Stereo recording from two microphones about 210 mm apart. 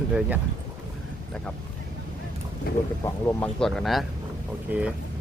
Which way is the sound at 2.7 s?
45° left (ahead or behind).